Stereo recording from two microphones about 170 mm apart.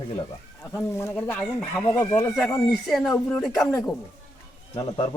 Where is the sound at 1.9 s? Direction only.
20° left (ahead or behind).